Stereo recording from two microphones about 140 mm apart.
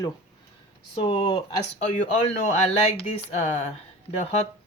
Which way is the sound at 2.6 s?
45° left (ahead or behind).